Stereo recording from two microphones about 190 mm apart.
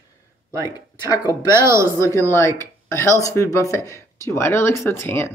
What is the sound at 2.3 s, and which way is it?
Speech, 15° left (ahead or behind).